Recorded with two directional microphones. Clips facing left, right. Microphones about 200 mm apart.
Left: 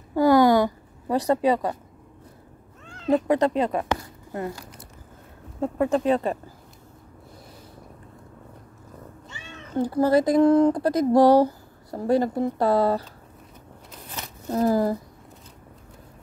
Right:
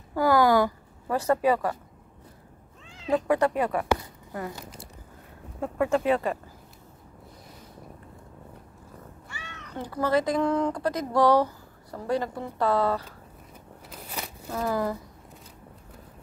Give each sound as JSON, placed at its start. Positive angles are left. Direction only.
{"t": 0.1, "sound": "a sound", "side_deg": 20}
{"t": 1.4, "sound": "speech", "side_deg": 25}
{"t": 2.9, "sound": "cat", "side_deg": 0}
{"t": 3.3, "sound": "speech", "side_deg": 20}
{"t": 4.6, "sound": "speech", "side_deg": -25}
{"t": 5.6, "sound": "speech", "side_deg": 20}
{"t": 9.7, "sound": "speech", "side_deg": 30}
{"t": 14.5, "sound": "speech", "side_deg": 35}